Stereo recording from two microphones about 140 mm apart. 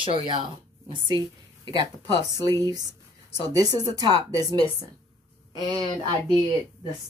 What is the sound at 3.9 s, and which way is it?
Speech, 30° right (ahead or behind).